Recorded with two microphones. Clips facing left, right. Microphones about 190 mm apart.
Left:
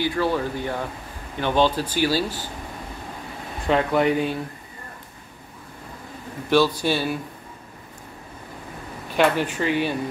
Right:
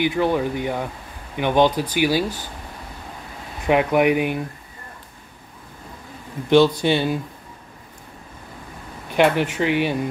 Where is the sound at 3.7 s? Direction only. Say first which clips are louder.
Right 3 dB; 15° right (ahead or behind).